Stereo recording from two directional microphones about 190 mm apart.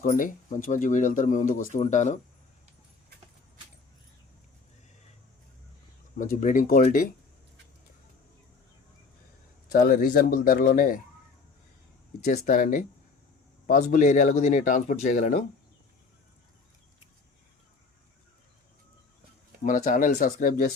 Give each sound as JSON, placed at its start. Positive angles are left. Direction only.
{"t": 0.0, "sound": "speech", "side_deg": 45}
{"t": 6.1, "sound": "speech", "side_deg": 45}
{"t": 9.7, "sound": "speech", "side_deg": 45}
{"t": 12.2, "sound": "speech", "side_deg": 50}
{"t": 19.6, "sound": "speech", "side_deg": 45}